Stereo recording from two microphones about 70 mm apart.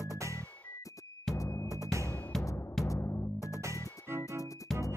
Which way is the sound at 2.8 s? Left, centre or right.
Left.